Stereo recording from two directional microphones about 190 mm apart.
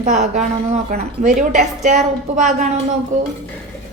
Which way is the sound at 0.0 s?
40° right (ahead or behind).